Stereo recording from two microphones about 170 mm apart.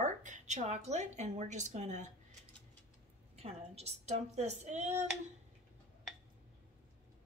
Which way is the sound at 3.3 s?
35° right (ahead or behind).